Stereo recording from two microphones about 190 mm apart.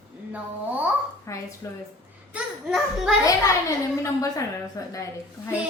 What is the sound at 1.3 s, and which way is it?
Speech, 15° left (ahead or behind).